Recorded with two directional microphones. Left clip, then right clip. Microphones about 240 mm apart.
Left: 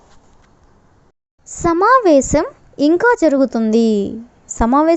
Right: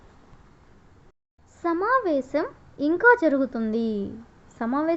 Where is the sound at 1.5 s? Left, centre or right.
Left.